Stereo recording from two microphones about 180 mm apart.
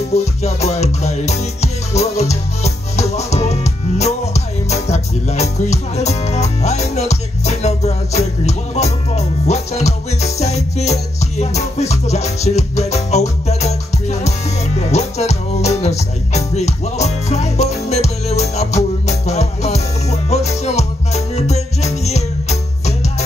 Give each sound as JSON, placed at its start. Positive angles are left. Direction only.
{"t": 0.1, "sound": "music", "side_deg": 35}